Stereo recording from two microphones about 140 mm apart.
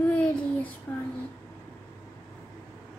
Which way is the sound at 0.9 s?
10° left (ahead or behind).